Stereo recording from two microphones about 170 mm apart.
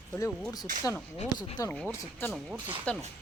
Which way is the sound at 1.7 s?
10° left (ahead or behind).